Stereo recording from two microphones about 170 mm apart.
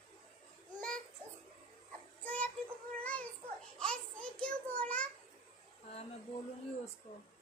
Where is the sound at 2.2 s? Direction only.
5° left (ahead or behind).